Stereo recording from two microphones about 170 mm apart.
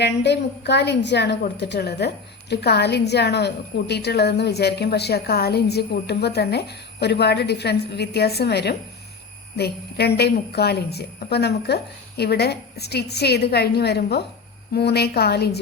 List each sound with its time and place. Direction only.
0.0 s a woman's voice: 90° left; by 15.6 s 70° left (ahead or behind)